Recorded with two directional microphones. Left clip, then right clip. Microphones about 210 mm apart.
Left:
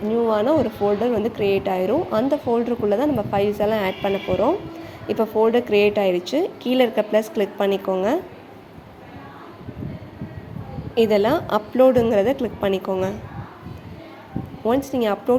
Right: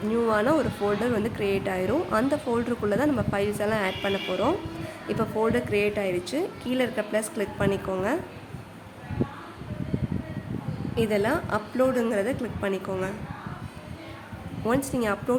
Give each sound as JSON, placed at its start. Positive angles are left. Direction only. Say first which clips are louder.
{"t": 0.1, "sound": "a woman's voice", "louder": "left 4 dB", "side_deg": 5}
{"t": 10.9, "sound": "a woman's voice", "louder": "left 8 dB", "side_deg": 20}
{"t": 14.9, "sound": "speech", "louder": "left 6 dB", "side_deg": 15}